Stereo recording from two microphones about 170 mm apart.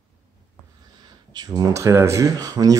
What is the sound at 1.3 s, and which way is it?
Speech, 25° right (ahead or behind).